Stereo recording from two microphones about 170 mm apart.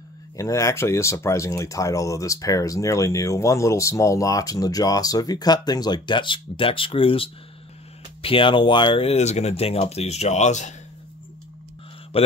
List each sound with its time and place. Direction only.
0.4 s speech: 20° left (ahead or behind); by 10.7 s 45° left (ahead or behind)
12.1 s speech: 35° left (ahead or behind)